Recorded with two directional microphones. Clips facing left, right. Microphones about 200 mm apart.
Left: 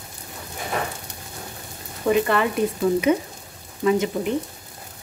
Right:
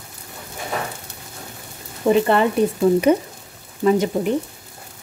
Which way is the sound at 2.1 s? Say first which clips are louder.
Right 4 dB; 30° right (ahead or behind).